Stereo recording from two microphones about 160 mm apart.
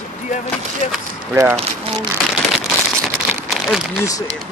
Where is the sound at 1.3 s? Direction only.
15° right (ahead or behind).